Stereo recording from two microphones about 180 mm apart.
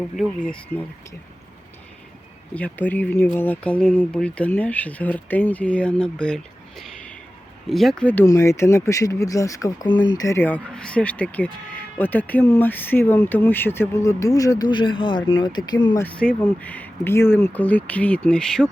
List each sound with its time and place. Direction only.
0.2 s speech: 5° left (ahead or behind)
2.6 s speech: 10° left (ahead or behind); by 16.0 s 25° left (ahead or behind)
16.0 s speech: 5° left (ahead or behind)